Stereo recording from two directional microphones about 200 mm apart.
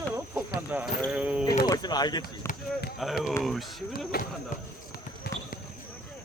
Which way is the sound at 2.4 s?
50° left (ahead or behind).